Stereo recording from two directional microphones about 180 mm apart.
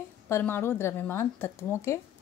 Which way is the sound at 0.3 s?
10° left (ahead or behind).